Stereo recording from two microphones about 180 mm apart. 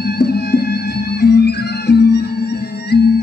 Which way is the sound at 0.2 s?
60° left (ahead or behind).